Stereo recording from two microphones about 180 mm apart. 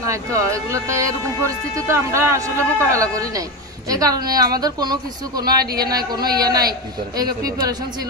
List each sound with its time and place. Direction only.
0.1 s a woman's voice: 15° right (ahead or behind)